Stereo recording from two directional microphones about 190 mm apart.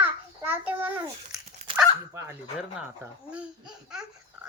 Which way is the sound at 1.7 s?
10° right (ahead or behind).